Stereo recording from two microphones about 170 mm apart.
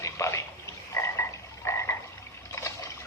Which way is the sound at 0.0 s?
15° left (ahead or behind).